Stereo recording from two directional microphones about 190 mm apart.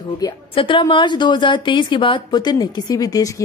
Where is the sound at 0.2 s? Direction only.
25° left (ahead or behind).